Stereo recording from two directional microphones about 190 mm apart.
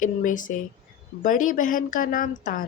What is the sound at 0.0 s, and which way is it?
Speech, 45° left (ahead or behind).